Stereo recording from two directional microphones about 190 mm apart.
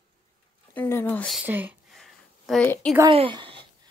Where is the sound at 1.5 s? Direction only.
10° right (ahead or behind).